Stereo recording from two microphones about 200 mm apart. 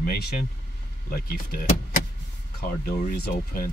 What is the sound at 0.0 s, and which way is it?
Speech, 50° left (ahead or behind).